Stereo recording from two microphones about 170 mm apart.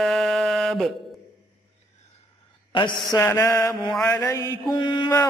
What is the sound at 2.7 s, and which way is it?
Mantra, 30° left (ahead or behind).